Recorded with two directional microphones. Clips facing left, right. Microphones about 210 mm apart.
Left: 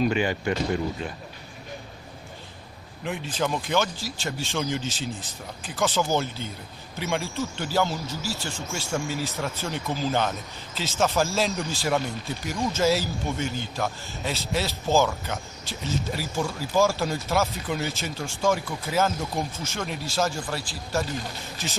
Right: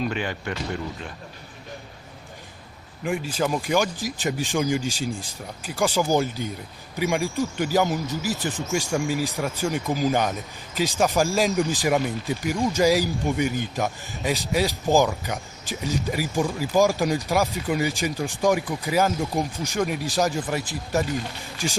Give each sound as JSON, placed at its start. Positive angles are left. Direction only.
{"t": 0.0, "sound": "speech", "side_deg": 5}
{"t": 3.0, "sound": "speech", "side_deg": -5}